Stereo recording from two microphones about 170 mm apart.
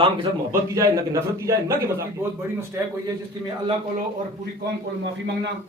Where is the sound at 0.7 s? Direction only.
20° right (ahead or behind).